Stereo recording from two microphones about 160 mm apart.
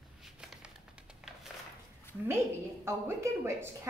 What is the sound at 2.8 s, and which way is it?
Speech, 15° right (ahead or behind).